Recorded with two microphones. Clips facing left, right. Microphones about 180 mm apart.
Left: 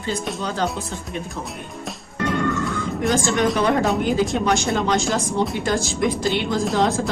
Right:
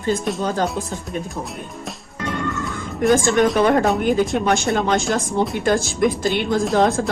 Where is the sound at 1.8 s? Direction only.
Centre (ahead or behind).